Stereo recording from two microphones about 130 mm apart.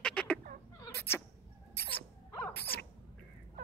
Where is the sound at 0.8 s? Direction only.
20° left (ahead or behind).